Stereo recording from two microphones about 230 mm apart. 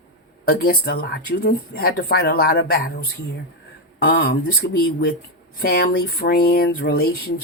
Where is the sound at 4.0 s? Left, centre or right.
Left.